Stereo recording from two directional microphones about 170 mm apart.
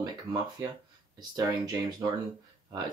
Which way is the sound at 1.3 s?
25° right (ahead or behind).